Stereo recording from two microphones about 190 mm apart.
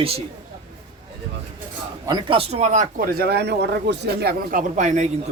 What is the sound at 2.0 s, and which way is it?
Speech, 25° right (ahead or behind).